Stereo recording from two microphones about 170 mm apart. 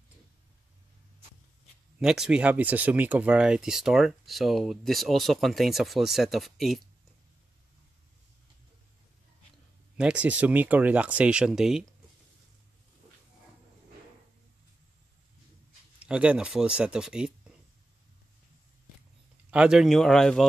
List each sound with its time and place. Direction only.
2.0 s speech: 5° right (ahead or behind)
9.9 s speech: 5° right (ahead or behind)
16.0 s speech: 5° right (ahead or behind)
19.5 s speech: 5° right (ahead or behind)